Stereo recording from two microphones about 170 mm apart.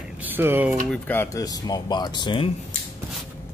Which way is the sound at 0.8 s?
10° left (ahead or behind).